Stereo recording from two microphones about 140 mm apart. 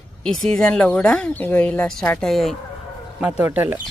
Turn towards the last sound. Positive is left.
turn(degrees=-15)  # may be behind; listen again after turning